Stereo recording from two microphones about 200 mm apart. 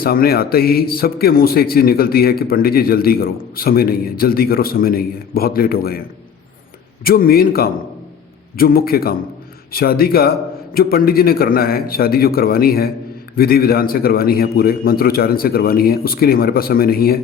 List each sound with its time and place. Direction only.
0.0 s speech: 50° left (ahead or behind)
7.0 s speech: 45° left (ahead or behind)